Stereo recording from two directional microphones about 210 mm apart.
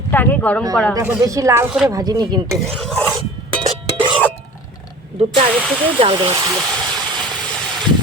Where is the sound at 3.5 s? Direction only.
25° right (ahead or behind).